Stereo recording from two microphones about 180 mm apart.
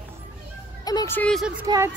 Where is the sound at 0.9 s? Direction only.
15° left (ahead or behind).